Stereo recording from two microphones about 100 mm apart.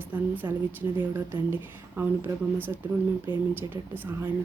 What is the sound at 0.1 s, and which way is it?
A woman's voice, 20° right (ahead or behind).